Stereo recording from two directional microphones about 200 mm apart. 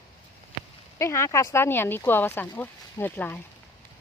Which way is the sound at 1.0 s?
15° left (ahead or behind).